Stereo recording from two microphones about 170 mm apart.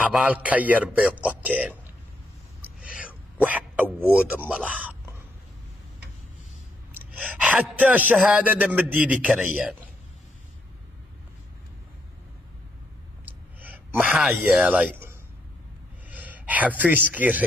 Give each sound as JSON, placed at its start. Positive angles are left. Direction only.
{"t": 0.0, "sound": "a man's voice", "side_deg": -5}
{"t": 2.8, "sound": "a sound", "side_deg": -5}
{"t": 4.1, "sound": "a man's voice", "side_deg": -5}
{"t": 6.9, "sound": "a man's voice", "side_deg": -10}
{"t": 13.9, "sound": "speech", "side_deg": 0}
{"t": 16.1, "sound": "a man's voice", "side_deg": -10}